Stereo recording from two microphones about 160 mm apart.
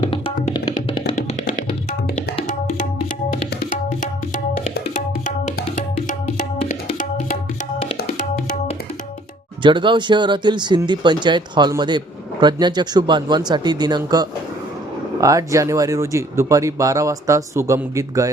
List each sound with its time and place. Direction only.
0.1 s music: 30° left (ahead or behind)
3.7 s tabla: 55° left (ahead or behind)
4.9 s music: 50° left (ahead or behind)
8.2 s music: 50° left (ahead or behind)
9.6 s speech: 30° right (ahead or behind)